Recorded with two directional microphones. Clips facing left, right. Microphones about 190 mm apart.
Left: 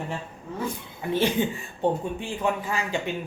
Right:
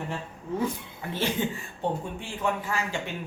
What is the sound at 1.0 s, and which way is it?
Speech, 15° left (ahead or behind).